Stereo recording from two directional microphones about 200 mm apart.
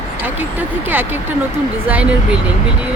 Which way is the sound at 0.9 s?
10° right (ahead or behind).